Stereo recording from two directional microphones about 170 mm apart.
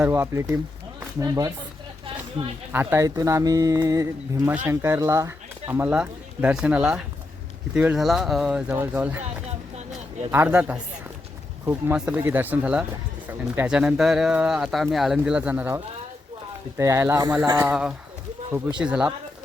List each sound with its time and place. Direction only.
0.0 s speech: 15° right (ahead or behind)
2.4 s speech: 35° right (ahead or behind)
2.7 s speech: 15° right (ahead or behind)
10.3 s speech: 10° right (ahead or behind)
18.8 s speech: 5° right (ahead or behind)